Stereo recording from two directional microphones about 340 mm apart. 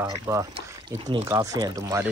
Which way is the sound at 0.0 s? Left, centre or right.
Centre.